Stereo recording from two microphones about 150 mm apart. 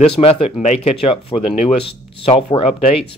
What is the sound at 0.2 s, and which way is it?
Speech, 40° left (ahead or behind).